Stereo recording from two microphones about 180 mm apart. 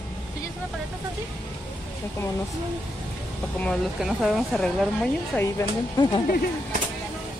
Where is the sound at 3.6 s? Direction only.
Centre (ahead or behind).